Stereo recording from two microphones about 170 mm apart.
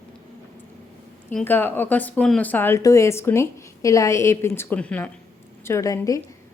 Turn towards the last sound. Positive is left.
turn(degrees=20)  # may be behind; listen again after turning